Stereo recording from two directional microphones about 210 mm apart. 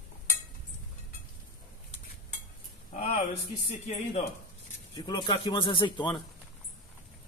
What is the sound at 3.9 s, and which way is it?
Speech, 30° left (ahead or behind).